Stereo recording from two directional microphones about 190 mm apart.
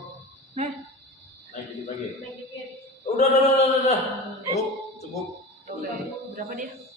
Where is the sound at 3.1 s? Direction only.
35° left (ahead or behind).